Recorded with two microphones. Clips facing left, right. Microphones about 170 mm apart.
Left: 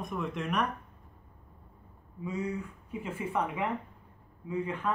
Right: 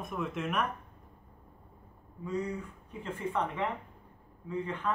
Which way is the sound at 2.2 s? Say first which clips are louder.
Even; 10° left (ahead or behind).